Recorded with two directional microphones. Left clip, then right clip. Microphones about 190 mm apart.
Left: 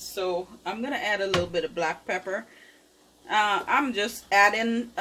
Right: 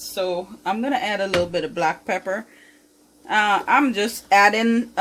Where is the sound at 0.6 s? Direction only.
55° right (ahead or behind).